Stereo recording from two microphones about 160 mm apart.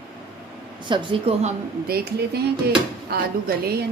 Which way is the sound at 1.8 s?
75° right (ahead or behind).